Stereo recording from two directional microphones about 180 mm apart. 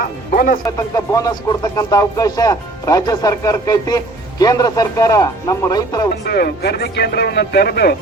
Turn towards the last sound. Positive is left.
turn(degrees=60)  # may be behind; listen again after turning